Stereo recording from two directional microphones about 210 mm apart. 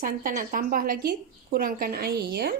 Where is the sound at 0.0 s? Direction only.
40° right (ahead or behind).